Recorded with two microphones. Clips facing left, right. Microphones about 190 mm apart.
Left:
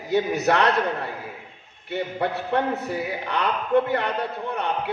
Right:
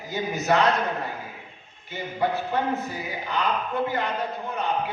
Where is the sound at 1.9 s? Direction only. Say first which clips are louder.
Left 1 dB; 70° left (ahead or behind).